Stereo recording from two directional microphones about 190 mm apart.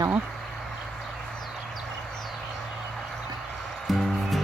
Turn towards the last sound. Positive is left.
turn(degrees=0)  # may be behind; listen again after turning